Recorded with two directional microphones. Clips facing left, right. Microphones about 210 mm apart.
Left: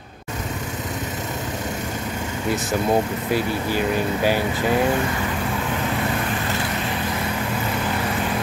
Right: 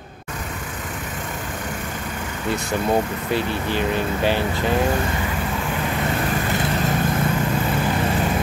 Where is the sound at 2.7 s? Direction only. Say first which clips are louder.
Even; 10° left (ahead or behind).